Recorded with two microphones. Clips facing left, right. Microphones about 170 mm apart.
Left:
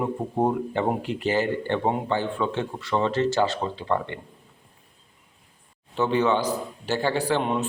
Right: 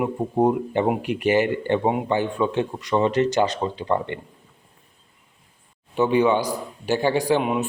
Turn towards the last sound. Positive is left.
turn(degrees=-10)  # may be behind; listen again after turning